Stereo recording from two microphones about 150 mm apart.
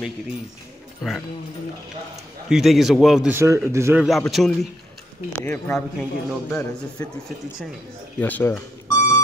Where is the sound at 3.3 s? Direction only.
15° right (ahead or behind).